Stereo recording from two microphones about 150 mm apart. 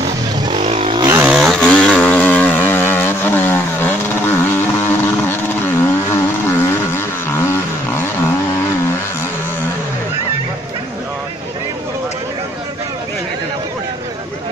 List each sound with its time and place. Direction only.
0.6 s vehicle: 45° right (ahead or behind)
1.0 s chainsaw: 15° right (ahead or behind)
1.3 s chainsaw: centre (ahead or behind)
6.9 s vehicle: 15° left (ahead or behind)